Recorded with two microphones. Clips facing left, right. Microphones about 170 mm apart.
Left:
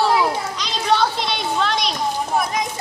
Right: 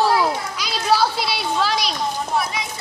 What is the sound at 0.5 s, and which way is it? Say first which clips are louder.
A woman's voice: even; 5° right (ahead or behind).